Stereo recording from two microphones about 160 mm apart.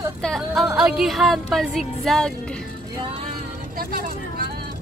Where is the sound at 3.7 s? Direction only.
65° right (ahead or behind).